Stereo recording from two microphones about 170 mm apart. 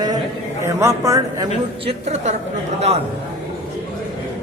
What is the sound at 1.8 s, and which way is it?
Speech, 35° right (ahead or behind).